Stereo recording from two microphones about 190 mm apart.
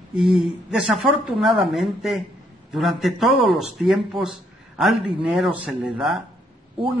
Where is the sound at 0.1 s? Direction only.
Centre (ahead or behind).